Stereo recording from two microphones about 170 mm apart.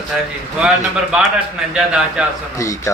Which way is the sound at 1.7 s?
5° right (ahead or behind).